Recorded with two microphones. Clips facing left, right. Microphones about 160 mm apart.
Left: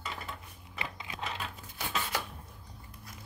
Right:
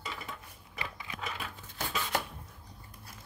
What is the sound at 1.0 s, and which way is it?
Typewriter, 25° left (ahead or behind).